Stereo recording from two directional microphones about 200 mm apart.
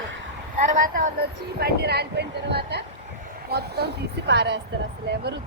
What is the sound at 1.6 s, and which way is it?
A woman's voice, 55° right (ahead or behind).